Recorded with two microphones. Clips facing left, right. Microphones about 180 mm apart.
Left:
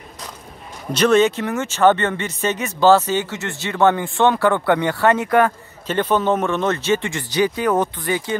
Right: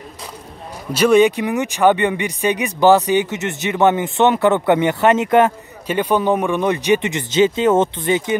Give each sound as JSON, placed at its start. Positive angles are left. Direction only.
{"t": 0.9, "sound": "speech", "side_deg": -10}
{"t": 5.9, "sound": "speech", "side_deg": -10}